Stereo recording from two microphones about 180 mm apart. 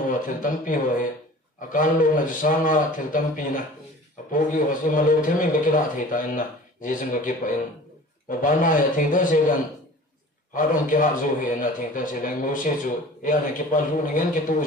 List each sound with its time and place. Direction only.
0.1 s a man's voice: 45° left (ahead or behind)